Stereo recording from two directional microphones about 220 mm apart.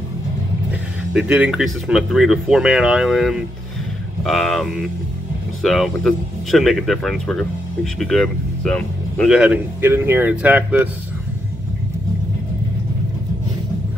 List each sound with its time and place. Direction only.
0.7 s speech: 5° right (ahead or behind)